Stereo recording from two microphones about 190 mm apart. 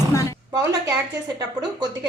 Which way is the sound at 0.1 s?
15° left (ahead or behind).